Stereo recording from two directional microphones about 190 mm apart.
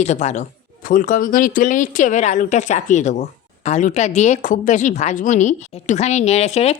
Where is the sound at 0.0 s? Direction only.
35° left (ahead or behind).